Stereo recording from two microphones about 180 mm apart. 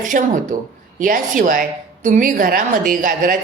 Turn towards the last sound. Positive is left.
turn(degrees=-50)  # may be behind; listen again after turning